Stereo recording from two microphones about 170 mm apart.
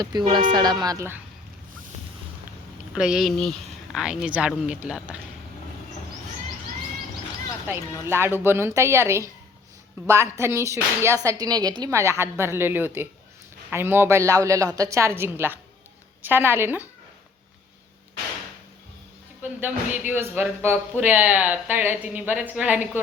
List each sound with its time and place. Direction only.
0.0 s speech: 25° right (ahead or behind)
2.9 s speech: 5° right (ahead or behind)
8.0 s speech: 15° right (ahead or behind)
19.4 s a woman's voice: 10° right (ahead or behind)